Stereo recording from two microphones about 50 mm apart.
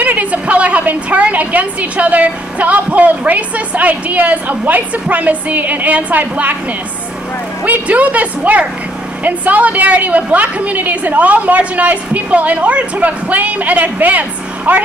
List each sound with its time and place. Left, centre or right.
0.0 s a woman's voice: right
7.6 s a woman's voice: right